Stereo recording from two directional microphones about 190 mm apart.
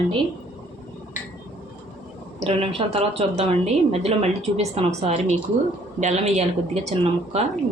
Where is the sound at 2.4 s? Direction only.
30° right (ahead or behind).